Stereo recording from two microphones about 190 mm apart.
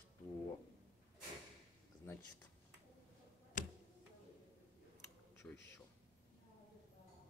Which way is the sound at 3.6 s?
45° left (ahead or behind).